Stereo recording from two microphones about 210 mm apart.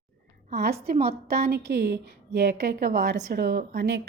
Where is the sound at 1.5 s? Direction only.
50° right (ahead or behind).